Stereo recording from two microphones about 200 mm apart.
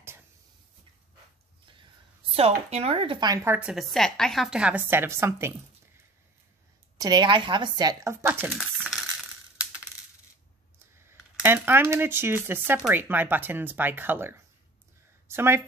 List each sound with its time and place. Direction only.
2.3 s speech: 30° right (ahead or behind)
3.4 s a woman's voice: 5° right (ahead or behind)
7.0 s speech: 20° right (ahead or behind)
8.5 s coin: centre (ahead or behind)
11.1 s speech: 10° right (ahead or behind)